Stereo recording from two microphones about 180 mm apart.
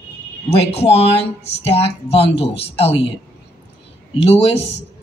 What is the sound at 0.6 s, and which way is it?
Speech, 35° left (ahead or behind).